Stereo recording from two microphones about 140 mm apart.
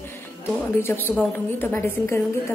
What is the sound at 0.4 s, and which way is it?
A woman's voice, 15° left (ahead or behind).